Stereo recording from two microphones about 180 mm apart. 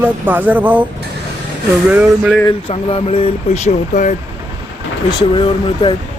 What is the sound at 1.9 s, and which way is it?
Speech, 5° right (ahead or behind).